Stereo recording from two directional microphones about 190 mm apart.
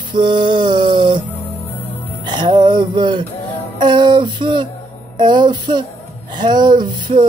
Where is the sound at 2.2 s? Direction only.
25° right (ahead or behind).